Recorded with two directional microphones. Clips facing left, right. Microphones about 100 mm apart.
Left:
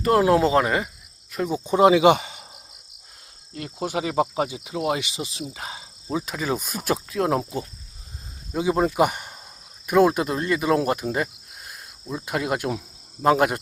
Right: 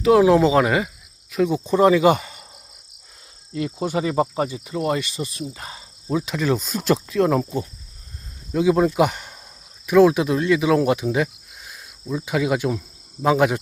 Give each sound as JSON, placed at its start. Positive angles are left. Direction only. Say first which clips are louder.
{"t": 0.0, "sound": "speech", "louder": "right 4 dB", "side_deg": 0}
{"t": 1.3, "sound": "speech", "louder": "right 5 dB", "side_deg": 0}
{"t": 1.6, "sound": "speech", "louder": "left 1 dB", "side_deg": 15}
{"t": 3.8, "sound": "speech", "louder": "right 1 dB", "side_deg": 10}
{"t": 6.1, "sound": "speech", "louder": "right 4 dB", "side_deg": 5}